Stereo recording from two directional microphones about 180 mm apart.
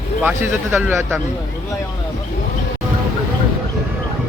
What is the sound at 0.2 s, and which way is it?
Speech, 10° right (ahead or behind).